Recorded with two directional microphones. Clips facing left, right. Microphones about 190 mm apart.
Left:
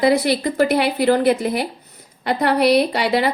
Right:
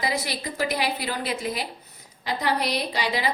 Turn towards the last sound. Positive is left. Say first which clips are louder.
# left 9 dB
turn(degrees=60)  # may be behind; listen again after turning